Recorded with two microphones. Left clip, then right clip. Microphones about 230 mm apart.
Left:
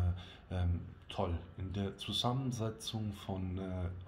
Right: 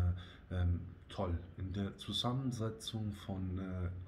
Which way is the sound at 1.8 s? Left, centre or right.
Centre.